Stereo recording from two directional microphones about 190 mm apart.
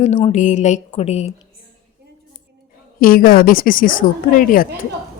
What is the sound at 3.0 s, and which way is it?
A woman's voice, 50° left (ahead or behind).